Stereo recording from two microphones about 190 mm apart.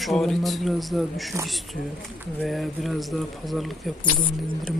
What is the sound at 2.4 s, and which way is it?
A man's voice, centre (ahead or behind).